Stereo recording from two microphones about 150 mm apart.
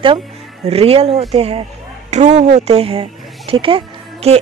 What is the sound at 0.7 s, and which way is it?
Speech, 40° right (ahead or behind).